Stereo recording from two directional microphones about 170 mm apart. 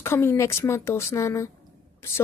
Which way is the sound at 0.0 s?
15° left (ahead or behind).